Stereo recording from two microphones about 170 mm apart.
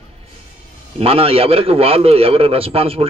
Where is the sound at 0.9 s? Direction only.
35° right (ahead or behind).